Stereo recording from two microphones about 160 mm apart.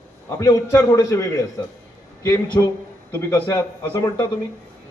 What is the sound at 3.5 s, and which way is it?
Speech, 20° left (ahead or behind).